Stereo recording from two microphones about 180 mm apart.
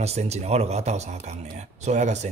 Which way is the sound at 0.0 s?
35° right (ahead or behind).